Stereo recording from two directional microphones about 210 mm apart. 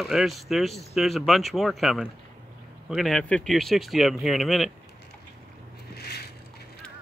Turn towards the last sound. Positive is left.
turn(degrees=50)  # may be behind; listen again after turning